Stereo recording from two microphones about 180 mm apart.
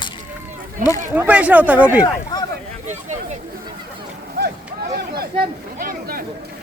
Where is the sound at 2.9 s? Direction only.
40° right (ahead or behind).